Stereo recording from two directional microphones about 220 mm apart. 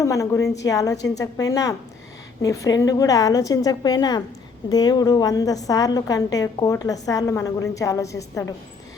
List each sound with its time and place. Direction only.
0.0 s a woman's voice: 15° left (ahead or behind)